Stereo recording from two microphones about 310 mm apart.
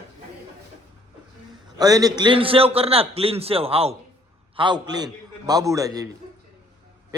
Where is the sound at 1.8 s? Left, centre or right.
Centre.